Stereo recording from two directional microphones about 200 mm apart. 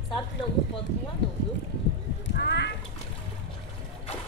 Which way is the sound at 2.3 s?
55° left (ahead or behind).